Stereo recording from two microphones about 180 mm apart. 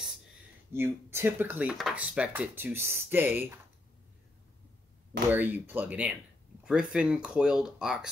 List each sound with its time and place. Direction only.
0.7 s speech: 15° right (ahead or behind)
5.3 s speech: 10° right (ahead or behind)